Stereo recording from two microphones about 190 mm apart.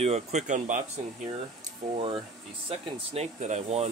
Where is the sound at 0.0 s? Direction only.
35° right (ahead or behind).